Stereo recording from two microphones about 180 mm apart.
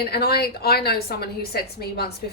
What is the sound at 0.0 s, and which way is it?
A woman's voice, 60° left (ahead or behind).